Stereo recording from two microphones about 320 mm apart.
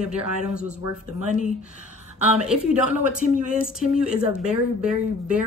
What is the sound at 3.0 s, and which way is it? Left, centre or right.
Speech, right.